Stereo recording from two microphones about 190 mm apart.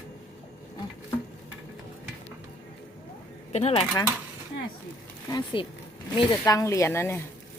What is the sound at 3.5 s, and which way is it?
Speech, 30° left (ahead or behind).